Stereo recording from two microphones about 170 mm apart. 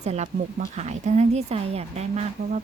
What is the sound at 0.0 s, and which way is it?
A woman's voice, 40° right (ahead or behind).